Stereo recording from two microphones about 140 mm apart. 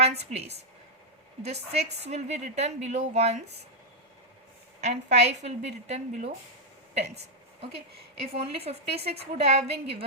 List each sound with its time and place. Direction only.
0.0 s a woman's voice: 50° right (ahead or behind)
4.8 s a woman's voice: 55° right (ahead or behind)
8.3 s a woman's voice: 45° right (ahead or behind)